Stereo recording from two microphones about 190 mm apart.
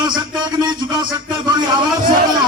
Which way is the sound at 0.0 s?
25° right (ahead or behind).